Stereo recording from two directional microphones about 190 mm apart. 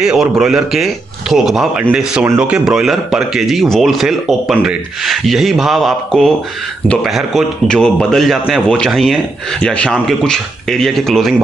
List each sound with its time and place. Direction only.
0.0 s a man's voice: 5° right (ahead or behind)